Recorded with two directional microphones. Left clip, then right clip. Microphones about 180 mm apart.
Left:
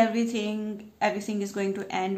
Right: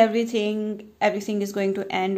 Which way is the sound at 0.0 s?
40° right (ahead or behind).